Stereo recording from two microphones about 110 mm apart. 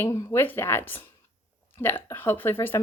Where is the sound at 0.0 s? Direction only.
20° left (ahead or behind).